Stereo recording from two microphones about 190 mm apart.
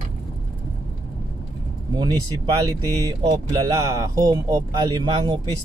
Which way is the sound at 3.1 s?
20° right (ahead or behind).